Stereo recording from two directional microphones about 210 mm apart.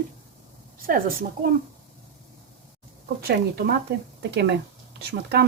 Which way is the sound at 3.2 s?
45° right (ahead or behind).